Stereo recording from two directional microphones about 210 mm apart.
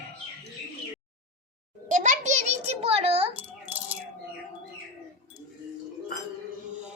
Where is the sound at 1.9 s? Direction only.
35° right (ahead or behind).